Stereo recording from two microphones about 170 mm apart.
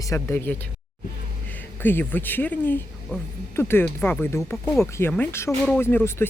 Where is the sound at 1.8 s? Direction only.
10° left (ahead or behind).